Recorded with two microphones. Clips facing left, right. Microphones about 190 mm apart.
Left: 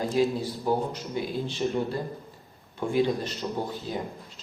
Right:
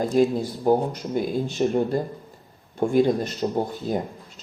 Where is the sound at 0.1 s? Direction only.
45° right (ahead or behind).